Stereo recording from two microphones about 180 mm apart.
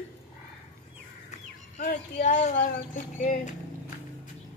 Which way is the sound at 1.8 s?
40° left (ahead or behind).